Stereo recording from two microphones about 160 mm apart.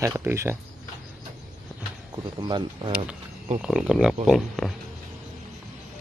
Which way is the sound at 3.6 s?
5° right (ahead or behind).